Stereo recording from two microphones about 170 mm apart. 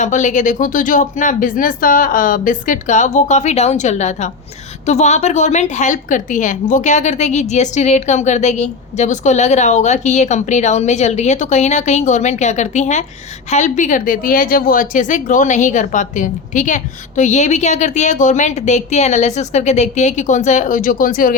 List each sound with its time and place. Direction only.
0.0 s a woman's voice: 45° left (ahead or behind)